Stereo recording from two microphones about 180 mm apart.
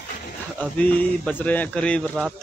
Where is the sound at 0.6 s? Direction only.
10° left (ahead or behind).